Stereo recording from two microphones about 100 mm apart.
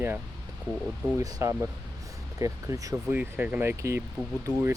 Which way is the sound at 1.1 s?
30° right (ahead or behind).